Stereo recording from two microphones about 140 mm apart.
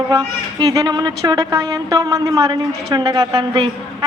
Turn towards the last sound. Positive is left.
turn(degrees=-30)  # may be behind; listen again after turning